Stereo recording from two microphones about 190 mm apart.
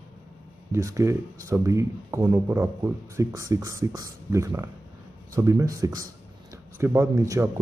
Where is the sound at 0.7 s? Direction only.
15° right (ahead or behind).